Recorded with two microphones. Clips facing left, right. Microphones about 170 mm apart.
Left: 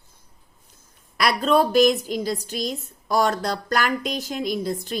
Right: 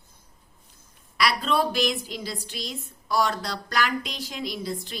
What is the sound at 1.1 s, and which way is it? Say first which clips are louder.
A woman's voice: left 5 dB; 45° left (ahead or behind).